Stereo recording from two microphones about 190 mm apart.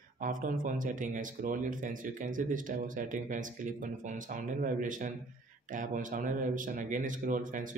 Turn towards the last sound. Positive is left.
turn(degrees=-45)  # may be behind; listen again after turning